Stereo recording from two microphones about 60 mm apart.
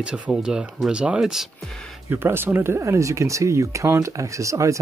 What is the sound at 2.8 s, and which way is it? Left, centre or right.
Speech, right.